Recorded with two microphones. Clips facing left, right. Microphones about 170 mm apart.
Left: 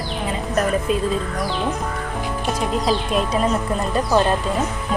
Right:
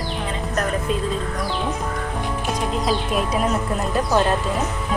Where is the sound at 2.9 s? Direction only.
5° right (ahead or behind).